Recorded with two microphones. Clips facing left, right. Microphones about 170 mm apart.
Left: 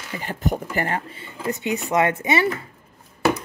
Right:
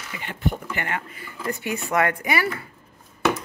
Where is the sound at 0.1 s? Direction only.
40° left (ahead or behind); by 2.6 s 25° left (ahead or behind).